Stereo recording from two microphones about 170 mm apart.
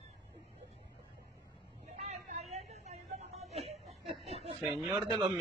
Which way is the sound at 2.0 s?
40° right (ahead or behind).